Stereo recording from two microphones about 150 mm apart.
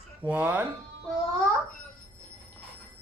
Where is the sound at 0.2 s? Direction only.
10° right (ahead or behind).